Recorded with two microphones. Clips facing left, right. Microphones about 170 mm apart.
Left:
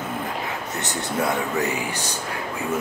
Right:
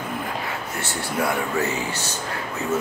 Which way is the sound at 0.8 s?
20° left (ahead or behind).